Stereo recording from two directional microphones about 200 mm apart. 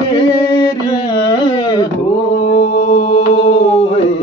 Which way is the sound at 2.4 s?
35° left (ahead or behind).